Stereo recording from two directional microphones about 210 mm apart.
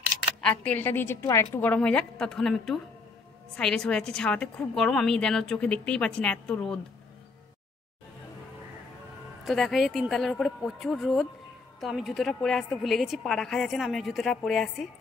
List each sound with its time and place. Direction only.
0.4 s a woman's voice: 5° left (ahead or behind)
9.4 s a woman's voice: centre (ahead or behind)